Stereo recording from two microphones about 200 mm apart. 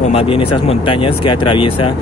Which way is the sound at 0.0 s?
30° left (ahead or behind).